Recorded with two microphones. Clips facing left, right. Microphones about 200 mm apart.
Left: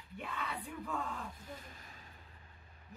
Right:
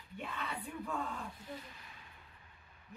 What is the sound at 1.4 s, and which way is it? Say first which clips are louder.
Speech: right 2 dB; 45° left (ahead or behind).